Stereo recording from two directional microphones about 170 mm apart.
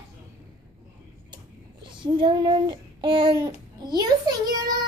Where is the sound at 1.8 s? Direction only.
30° right (ahead or behind).